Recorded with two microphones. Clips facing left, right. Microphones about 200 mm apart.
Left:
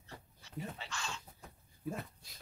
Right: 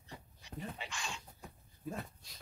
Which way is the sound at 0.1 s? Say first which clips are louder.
Left 1 dB; 15° right (ahead or behind).